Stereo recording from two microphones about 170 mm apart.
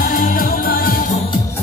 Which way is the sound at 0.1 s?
55° left (ahead or behind).